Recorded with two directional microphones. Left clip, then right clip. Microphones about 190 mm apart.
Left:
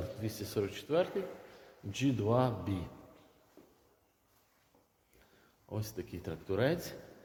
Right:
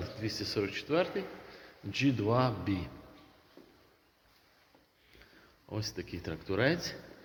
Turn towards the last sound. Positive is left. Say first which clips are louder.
# right 2 dB
turn(degrees=10)  # may be behind; listen again after turning